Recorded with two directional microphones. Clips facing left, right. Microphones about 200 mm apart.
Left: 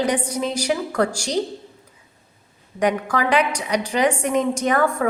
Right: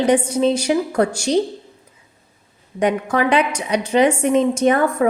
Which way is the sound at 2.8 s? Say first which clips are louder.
Right 3 dB; 25° right (ahead or behind).